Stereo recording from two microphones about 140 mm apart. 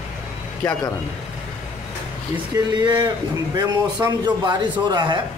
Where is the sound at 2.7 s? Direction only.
30° right (ahead or behind).